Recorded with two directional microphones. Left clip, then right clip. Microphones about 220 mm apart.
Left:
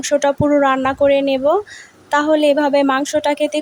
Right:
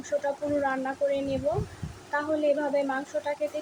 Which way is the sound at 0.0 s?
50° left (ahead or behind).